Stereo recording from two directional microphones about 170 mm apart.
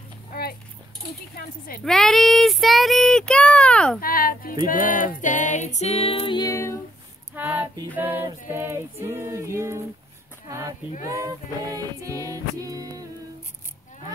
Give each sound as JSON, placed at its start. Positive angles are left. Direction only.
{"t": 0.3, "sound": "a sound", "side_deg": 65}
{"t": 1.9, "sound": "child singing", "side_deg": 5}
{"t": 4.0, "sound": "speech", "side_deg": 60}
{"t": 4.6, "sound": "music", "side_deg": 55}
{"t": 7.3, "sound": "music", "side_deg": -10}
{"t": 7.9, "sound": "a sound", "side_deg": -10}
{"t": 11.1, "sound": "music", "side_deg": -20}